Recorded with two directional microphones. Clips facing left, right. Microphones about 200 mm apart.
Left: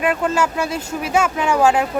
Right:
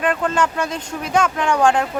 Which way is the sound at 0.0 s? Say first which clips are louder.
Left 1 dB; 5° left (ahead or behind).